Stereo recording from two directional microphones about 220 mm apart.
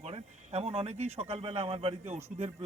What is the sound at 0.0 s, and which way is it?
Speech, 30° right (ahead or behind).